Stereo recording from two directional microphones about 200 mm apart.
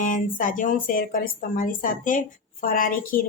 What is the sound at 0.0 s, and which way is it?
Speech, 40° left (ahead or behind).